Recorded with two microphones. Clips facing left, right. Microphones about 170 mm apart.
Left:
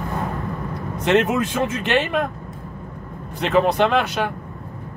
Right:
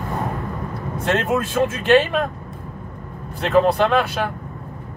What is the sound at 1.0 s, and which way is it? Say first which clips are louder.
Speech: left 4 dB; 15° left (ahead or behind).